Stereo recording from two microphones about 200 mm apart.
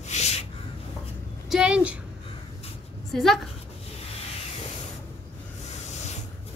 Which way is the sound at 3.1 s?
Centre (ahead or behind).